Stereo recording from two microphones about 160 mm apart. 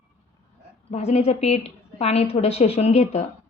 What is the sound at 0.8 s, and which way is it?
A woman's voice, 40° left (ahead or behind).